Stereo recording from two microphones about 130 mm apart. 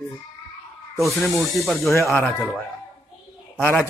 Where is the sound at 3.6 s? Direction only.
15° left (ahead or behind).